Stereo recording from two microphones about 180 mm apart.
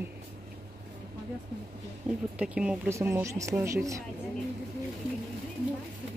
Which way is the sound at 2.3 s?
5° right (ahead or behind).